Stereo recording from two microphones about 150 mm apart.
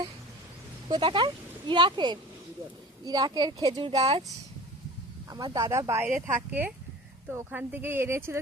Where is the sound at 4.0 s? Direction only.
40° right (ahead or behind).